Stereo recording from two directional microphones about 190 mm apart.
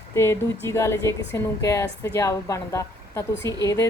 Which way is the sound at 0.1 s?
15° left (ahead or behind).